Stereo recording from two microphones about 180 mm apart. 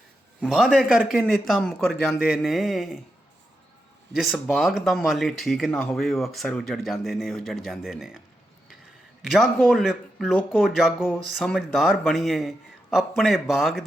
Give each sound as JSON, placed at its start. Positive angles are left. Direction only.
{"t": 0.4, "sound": "speech", "side_deg": 0}
{"t": 4.1, "sound": "speech", "side_deg": 0}
{"t": 9.3, "sound": "speech", "side_deg": 0}